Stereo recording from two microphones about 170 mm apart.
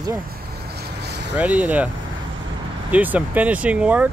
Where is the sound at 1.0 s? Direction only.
85° right.